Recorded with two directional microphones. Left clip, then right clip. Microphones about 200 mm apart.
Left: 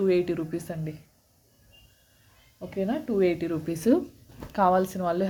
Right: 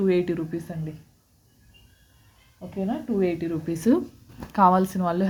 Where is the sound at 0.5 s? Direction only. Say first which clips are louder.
Even; 15° left (ahead or behind).